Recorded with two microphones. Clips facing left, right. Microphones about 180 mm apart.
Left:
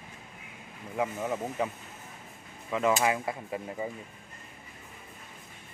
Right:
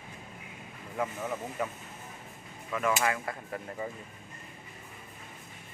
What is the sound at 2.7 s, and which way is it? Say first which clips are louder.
Speech: left 3 dB; 20° left (ahead or behind).